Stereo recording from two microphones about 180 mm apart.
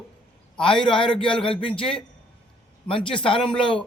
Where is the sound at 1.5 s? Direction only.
30° left (ahead or behind).